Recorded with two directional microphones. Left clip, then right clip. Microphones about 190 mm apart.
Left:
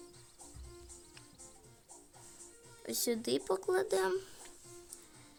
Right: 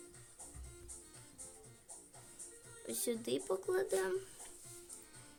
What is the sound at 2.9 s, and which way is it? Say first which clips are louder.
Speech: left 4 dB; 15° left (ahead or behind).